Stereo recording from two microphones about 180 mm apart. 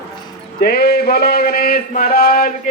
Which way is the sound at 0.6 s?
60° left (ahead or behind).